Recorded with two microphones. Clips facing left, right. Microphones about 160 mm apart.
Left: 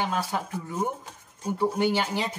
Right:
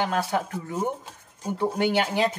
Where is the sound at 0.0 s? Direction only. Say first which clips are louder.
Right 3 dB; 65° right (ahead or behind).